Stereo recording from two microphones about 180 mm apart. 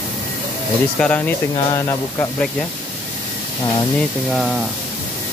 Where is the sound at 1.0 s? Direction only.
5° left (ahead or behind).